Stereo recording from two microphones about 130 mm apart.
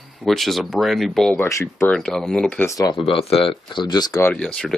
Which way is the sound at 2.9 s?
45° left (ahead or behind).